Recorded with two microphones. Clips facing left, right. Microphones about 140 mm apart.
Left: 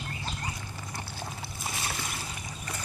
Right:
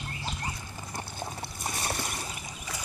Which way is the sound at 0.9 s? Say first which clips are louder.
Right 3 dB; 25° right (ahead or behind).